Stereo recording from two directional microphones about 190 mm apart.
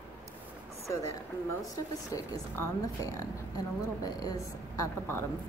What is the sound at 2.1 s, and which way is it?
A woman's voice, 15° left (ahead or behind).